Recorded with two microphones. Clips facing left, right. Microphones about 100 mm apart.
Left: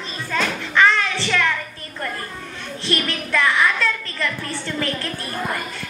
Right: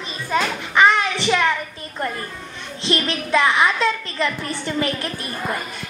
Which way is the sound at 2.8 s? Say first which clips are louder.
Right 2 dB; 20° right (ahead or behind).